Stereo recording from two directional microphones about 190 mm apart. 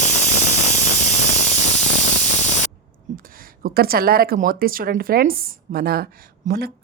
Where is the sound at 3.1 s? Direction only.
50° right (ahead or behind).